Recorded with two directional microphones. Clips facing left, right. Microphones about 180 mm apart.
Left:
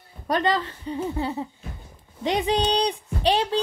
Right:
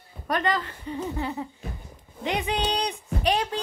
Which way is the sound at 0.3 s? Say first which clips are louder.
Left 3 dB; 30° left (ahead or behind).